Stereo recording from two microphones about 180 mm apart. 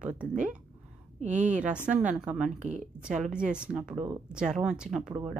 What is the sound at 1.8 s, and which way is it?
Speech, 5° right (ahead or behind).